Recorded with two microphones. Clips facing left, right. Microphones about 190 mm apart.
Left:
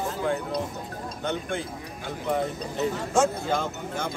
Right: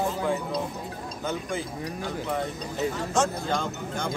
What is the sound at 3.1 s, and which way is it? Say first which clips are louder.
Speech: left 4 dB; 5° left (ahead or behind).